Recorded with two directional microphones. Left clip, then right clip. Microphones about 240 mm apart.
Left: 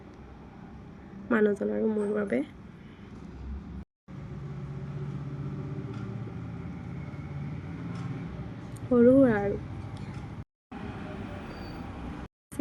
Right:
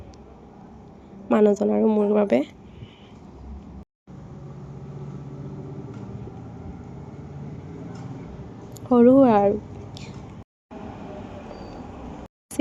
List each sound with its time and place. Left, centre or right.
1.3 s a woman's voice: right
8.9 s a woman's voice: right